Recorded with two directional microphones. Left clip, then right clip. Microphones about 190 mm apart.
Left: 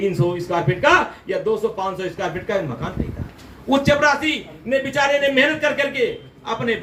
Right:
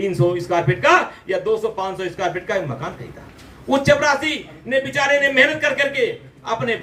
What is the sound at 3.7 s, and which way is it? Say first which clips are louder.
Speech: even; 15° right (ahead or behind).